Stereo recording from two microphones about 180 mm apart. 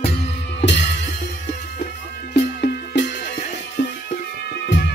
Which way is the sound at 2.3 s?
65° left (ahead or behind).